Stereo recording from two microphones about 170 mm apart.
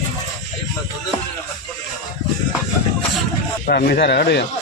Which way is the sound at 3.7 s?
60° left (ahead or behind).